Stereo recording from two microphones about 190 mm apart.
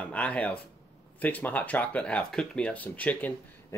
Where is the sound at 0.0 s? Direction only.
5° left (ahead or behind).